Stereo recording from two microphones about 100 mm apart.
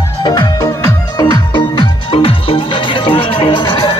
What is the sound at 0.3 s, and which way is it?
Music, 40° left (ahead or behind).